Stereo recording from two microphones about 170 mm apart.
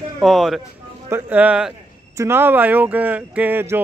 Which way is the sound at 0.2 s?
Centre (ahead or behind).